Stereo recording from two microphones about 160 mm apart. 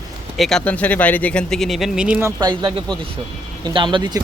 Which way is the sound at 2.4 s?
25° right (ahead or behind).